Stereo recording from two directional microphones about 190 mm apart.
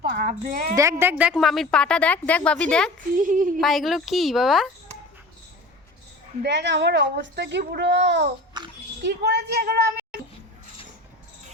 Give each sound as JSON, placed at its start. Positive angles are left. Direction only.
{"t": 0.0, "sound": "a woman's voice", "side_deg": -50}
{"t": 0.8, "sound": "a woman's voice", "side_deg": -15}
{"t": 3.2, "sound": "speech", "side_deg": -45}
{"t": 3.6, "sound": "a woman's voice", "side_deg": 0}
{"t": 6.4, "sound": "a child's voice", "side_deg": -65}
{"t": 8.6, "sound": "speech", "side_deg": -20}
{"t": 9.0, "sound": "a child's voice", "side_deg": -60}